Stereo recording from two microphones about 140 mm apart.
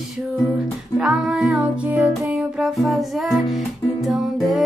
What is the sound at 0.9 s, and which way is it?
Music, 5° right (ahead or behind).